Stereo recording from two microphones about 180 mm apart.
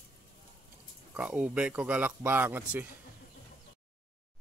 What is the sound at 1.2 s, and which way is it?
Speech, 5° right (ahead or behind).